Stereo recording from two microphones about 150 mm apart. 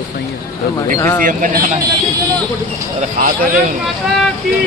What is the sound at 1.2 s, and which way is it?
Speech, 60° right (ahead or behind).